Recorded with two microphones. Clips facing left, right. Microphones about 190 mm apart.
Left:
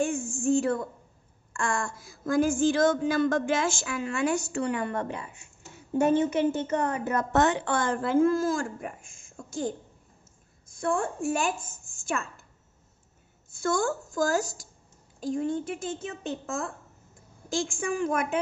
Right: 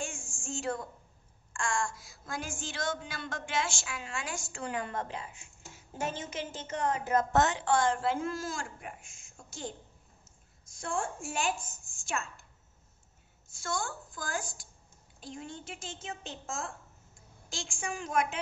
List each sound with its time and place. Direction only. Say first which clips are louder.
0.0 s a sound: left 14 dB; 55° left (ahead or behind)
1.6 s a woman's voice: left 3 dB; 55° left (ahead or behind)
10.8 s a woman's voice: left 7 dB; 60° left (ahead or behind)
14.0 s a woman's voice: left 12 dB; 45° left (ahead or behind)
17.6 s a woman's voice: left 10 dB; 55° left (ahead or behind)